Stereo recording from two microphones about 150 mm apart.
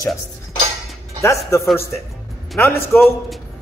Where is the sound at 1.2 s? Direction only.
20° left (ahead or behind).